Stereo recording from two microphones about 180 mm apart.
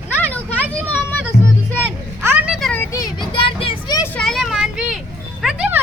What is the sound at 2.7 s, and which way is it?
Vehicle, 15° left (ahead or behind).